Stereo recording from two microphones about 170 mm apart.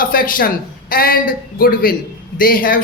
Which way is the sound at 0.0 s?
55° left (ahead or behind).